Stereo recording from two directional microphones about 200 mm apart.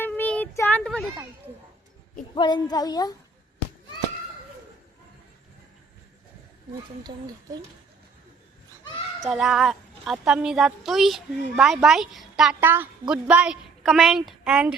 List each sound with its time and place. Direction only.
0.0 s child singing: 10° left (ahead or behind)
2.3 s a woman's voice: 20° left (ahead or behind)
7.0 s speech: 20° right (ahead or behind)
9.2 s a woman's voice: centre (ahead or behind)